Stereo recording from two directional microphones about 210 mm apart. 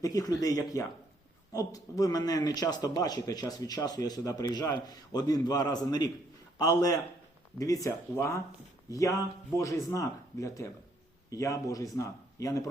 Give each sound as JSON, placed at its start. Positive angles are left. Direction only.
{"t": 0.0, "sound": "a man's voice", "side_deg": 15}